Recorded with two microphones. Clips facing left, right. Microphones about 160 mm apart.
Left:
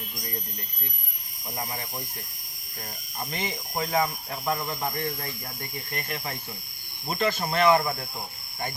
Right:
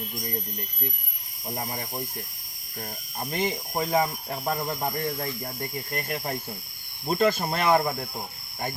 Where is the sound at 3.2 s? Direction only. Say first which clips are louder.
Right 5 dB; 45° right (ahead or behind).